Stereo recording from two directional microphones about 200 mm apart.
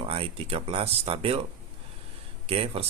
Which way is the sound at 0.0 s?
30° right (ahead or behind).